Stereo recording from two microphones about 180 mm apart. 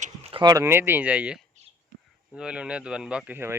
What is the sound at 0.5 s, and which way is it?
Speech, 15° right (ahead or behind).